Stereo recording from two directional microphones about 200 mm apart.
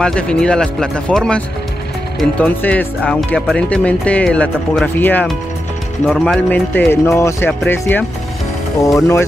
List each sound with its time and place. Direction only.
0.0 s speech: 5° left (ahead or behind)